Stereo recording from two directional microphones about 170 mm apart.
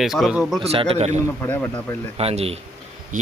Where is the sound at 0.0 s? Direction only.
Centre (ahead or behind).